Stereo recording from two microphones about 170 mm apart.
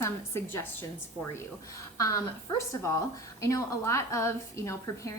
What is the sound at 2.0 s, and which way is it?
A woman's voice, 20° left (ahead or behind).